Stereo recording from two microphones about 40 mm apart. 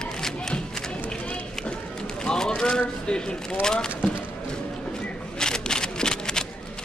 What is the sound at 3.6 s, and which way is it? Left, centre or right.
Speech, centre.